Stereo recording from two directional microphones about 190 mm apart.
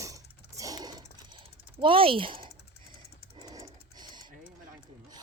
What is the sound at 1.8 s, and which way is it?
Speech, 30° right (ahead or behind).